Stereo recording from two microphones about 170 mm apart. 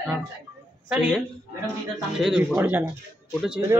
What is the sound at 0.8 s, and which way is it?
A man's voice, 5° right (ahead or behind).